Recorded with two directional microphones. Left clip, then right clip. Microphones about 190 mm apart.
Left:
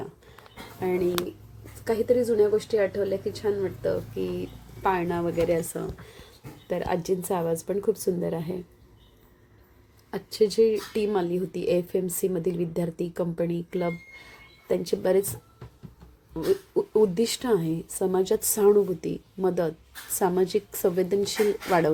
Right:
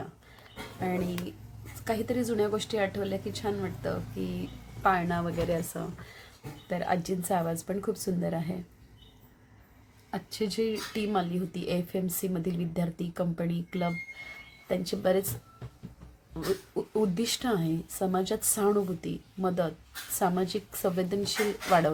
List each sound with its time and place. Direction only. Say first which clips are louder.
0.8 s a woman's voice: left 7 dB; 15° left (ahead or behind)
2.7 s a woman's voice: left 6 dB; 5° right (ahead or behind)
3.4 s a woman's voice: left 7 dB; 10° left (ahead or behind)
5.7 s speech: left 5 dB; 20° left (ahead or behind)
6.7 s a woman's voice: left 3 dB; 10° left (ahead or behind)
10.1 s a woman's voice: left 9 dB; 15° left (ahead or behind)
16.7 s a woman's voice: left 9 dB; 10° left (ahead or behind)